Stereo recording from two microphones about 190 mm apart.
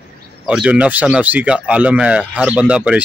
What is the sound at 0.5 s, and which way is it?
Speech, 5° right (ahead or behind).